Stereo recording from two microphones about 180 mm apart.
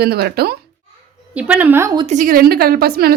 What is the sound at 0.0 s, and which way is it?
Speech, 60° right (ahead or behind).